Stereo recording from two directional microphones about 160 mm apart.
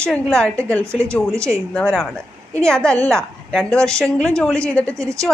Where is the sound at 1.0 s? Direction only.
15° right (ahead or behind).